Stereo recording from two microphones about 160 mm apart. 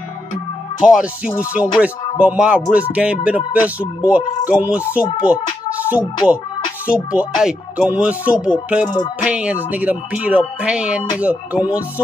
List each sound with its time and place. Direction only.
0.8 s speech: 5° right (ahead or behind)
8.8 s music: 25° left (ahead or behind)
9.2 s speech: 10° right (ahead or behind)